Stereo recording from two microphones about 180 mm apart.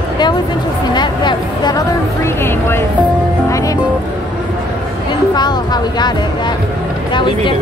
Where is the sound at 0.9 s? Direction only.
25° left (ahead or behind).